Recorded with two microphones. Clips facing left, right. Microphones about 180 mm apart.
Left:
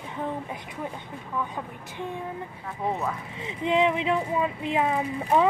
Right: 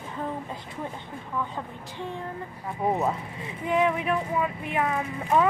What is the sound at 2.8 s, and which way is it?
Speech, 20° right (ahead or behind).